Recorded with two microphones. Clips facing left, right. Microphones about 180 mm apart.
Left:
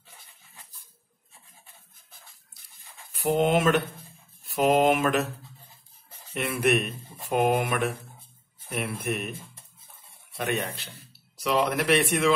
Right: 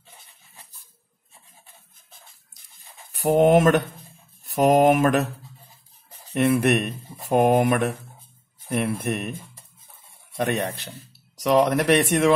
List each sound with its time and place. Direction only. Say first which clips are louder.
3.2 s speech: right 6 dB; 45° right (ahead or behind)
6.3 s speech: right 5 dB; 45° right (ahead or behind)
10.9 s speech: right 7 dB; 45° right (ahead or behind)